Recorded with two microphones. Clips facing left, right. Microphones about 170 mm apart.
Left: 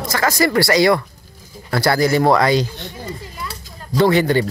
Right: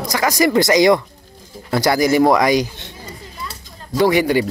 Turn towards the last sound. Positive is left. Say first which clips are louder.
# even
turn(degrees=-10)  # may be behind; listen again after turning